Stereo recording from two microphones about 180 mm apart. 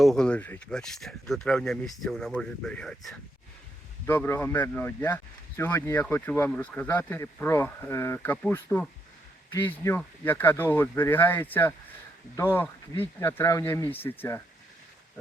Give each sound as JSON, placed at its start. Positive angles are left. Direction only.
{"t": 0.0, "sound": "speech", "side_deg": 0}
{"t": 4.0, "sound": "speech", "side_deg": 15}